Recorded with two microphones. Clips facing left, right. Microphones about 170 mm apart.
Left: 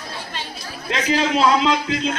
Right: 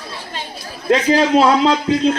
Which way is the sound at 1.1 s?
45° right (ahead or behind).